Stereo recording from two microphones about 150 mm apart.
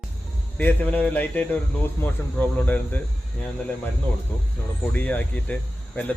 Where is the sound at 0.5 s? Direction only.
10° left (ahead or behind).